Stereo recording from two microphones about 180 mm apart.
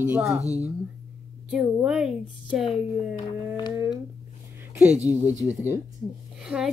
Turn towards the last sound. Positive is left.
turn(degrees=-5)  # may be behind; listen again after turning